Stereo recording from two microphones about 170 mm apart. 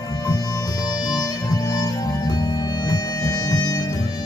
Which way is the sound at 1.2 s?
20° left (ahead or behind).